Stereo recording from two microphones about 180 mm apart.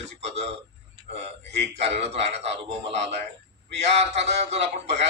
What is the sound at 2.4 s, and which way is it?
Speech, 75° right (ahead or behind).